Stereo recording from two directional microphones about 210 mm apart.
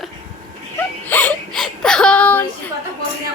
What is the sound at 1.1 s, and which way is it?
Speech, 5° left (ahead or behind).